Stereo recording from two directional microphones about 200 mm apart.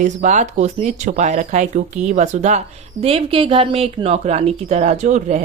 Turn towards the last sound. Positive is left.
turn(degrees=-35)  # may be behind; listen again after turning